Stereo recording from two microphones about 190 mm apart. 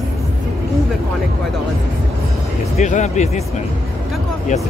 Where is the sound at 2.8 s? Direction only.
40° left (ahead or behind).